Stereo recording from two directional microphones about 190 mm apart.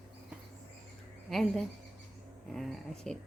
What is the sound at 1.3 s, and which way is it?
A woman's voice, centre (ahead or behind).